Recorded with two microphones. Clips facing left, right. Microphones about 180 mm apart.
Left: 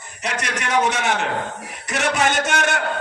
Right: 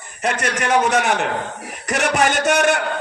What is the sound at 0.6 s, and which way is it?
A man's voice, 55° right (ahead or behind).